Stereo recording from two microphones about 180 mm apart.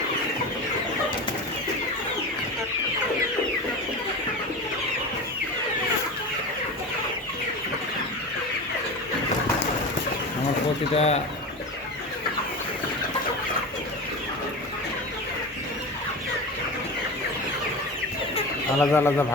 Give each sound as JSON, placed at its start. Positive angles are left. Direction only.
{"t": 10.9, "sound": "speech", "side_deg": 35}
{"t": 18.8, "sound": "speech", "side_deg": 15}